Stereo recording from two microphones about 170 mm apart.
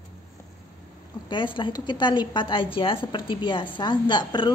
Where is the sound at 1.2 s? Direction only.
30° left (ahead or behind).